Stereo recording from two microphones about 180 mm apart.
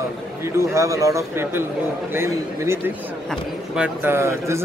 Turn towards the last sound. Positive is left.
turn(degrees=-15)  # may be behind; listen again after turning